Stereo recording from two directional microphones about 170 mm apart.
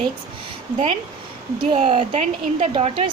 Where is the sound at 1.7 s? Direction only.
35° right (ahead or behind).